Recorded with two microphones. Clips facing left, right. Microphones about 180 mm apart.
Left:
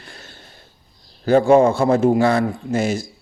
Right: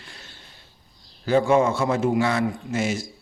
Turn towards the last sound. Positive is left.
turn(degrees=35)  # may be behind; listen again after turning